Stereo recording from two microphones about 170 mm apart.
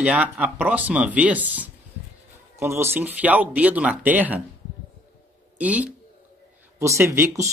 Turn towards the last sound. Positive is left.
turn(degrees=-15)  # may be behind; listen again after turning